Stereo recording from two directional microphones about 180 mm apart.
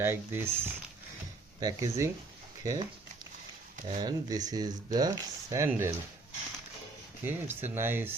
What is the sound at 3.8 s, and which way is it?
Speech, 25° right (ahead or behind).